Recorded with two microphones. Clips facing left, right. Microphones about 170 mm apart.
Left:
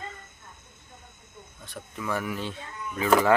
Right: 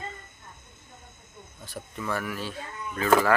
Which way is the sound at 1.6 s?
5° right (ahead or behind).